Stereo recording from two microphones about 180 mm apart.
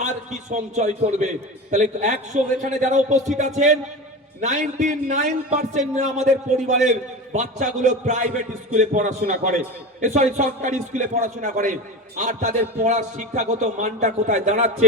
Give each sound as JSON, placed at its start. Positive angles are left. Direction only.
{"t": 0.5, "sound": "a man's voice", "side_deg": -40}